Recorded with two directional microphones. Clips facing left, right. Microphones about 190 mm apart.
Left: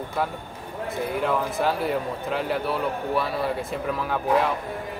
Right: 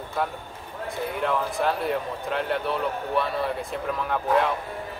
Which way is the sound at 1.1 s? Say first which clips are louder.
Left 1 dB; centre (ahead or behind).